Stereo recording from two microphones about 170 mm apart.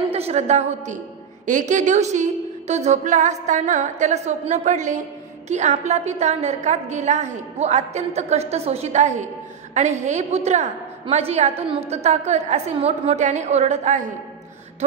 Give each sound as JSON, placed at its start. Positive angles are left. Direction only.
{"t": 0.1, "sound": "a woman's voice", "side_deg": -40}